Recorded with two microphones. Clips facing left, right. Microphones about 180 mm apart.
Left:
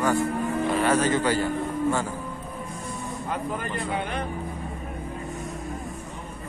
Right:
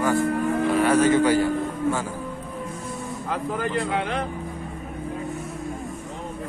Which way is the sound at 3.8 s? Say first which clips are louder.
Right 3 dB; 90° right.